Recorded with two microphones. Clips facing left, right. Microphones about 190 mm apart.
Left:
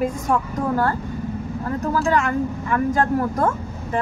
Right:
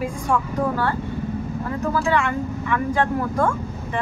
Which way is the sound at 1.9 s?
40° left (ahead or behind).